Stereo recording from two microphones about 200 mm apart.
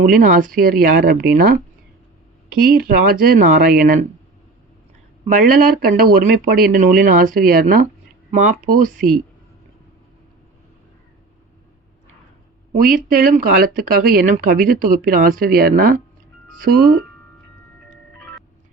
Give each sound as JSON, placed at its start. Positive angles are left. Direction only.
{"t": 0.0, "sound": "speech", "side_deg": -40}
{"t": 2.6, "sound": "speech", "side_deg": -50}
{"t": 5.2, "sound": "speech", "side_deg": -40}
{"t": 12.7, "sound": "speech", "side_deg": -40}